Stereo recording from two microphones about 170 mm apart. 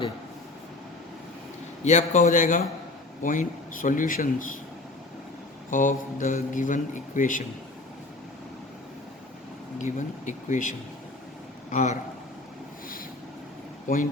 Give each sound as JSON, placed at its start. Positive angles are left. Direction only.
{"t": 1.8, "sound": "speech", "side_deg": 45}
{"t": 5.7, "sound": "speech", "side_deg": 50}
{"t": 9.7, "sound": "speech", "side_deg": 45}
{"t": 13.8, "sound": "speech", "side_deg": 50}